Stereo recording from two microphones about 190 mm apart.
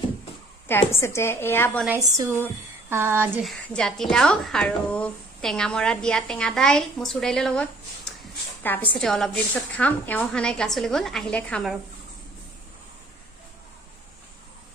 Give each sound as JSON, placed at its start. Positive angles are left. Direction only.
{"t": 0.7, "sound": "a woman's voice", "side_deg": 15}
{"t": 1.9, "sound": "speech", "side_deg": -20}
{"t": 3.4, "sound": "a woman's voice", "side_deg": 5}
{"t": 8.2, "sound": "a sound", "side_deg": 10}
{"t": 9.0, "sound": "a woman's voice", "side_deg": 0}